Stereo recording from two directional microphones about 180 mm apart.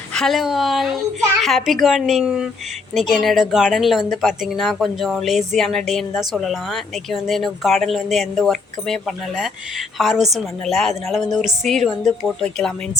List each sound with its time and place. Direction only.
0.1 s speech: centre (ahead or behind)